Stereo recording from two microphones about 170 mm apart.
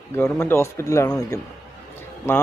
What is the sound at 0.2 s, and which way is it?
Speech, 15° left (ahead or behind).